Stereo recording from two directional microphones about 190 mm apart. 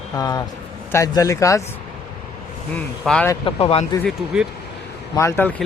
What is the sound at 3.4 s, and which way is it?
Speech, 30° left (ahead or behind).